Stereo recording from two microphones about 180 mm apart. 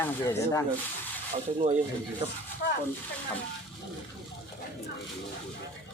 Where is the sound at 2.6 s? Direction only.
70° left (ahead or behind).